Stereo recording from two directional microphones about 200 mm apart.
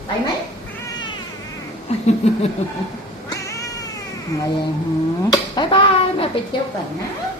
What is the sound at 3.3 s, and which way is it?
Cat, 15° left (ahead or behind).